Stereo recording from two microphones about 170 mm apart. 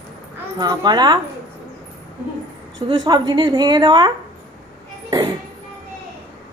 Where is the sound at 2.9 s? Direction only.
25° right (ahead or behind).